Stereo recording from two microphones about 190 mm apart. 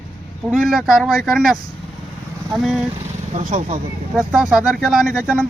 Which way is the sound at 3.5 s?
35° right (ahead or behind).